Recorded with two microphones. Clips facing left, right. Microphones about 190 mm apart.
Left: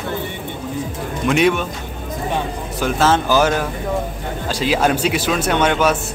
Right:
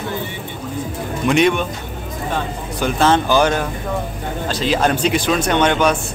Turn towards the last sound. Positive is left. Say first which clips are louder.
# right 1 dB
turn(degrees=5)  # may be behind; listen again after turning